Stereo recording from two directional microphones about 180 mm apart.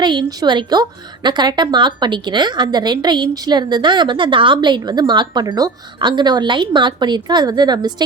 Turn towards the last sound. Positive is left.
turn(degrees=-20)  # may be behind; listen again after turning